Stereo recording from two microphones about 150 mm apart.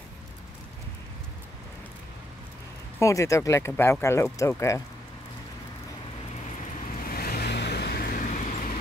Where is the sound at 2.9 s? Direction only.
20° left (ahead or behind).